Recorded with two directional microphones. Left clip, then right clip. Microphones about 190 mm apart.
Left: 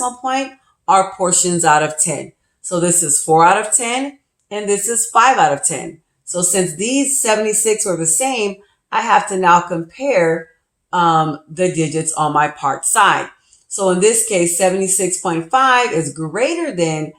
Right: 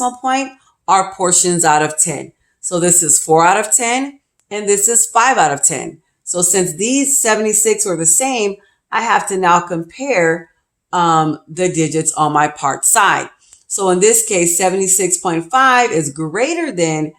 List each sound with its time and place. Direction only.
0.0 s a woman's voice: 45° right (ahead or behind)